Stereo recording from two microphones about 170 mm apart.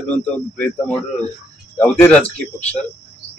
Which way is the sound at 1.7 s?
5° left (ahead or behind).